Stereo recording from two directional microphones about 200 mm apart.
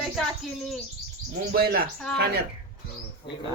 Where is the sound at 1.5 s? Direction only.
50° right (ahead or behind).